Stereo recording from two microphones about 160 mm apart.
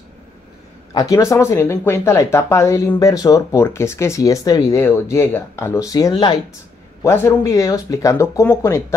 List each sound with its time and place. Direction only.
0.9 s speech: 20° left (ahead or behind)